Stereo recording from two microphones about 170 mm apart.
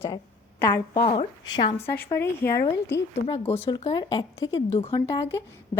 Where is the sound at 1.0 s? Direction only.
30° left (ahead or behind).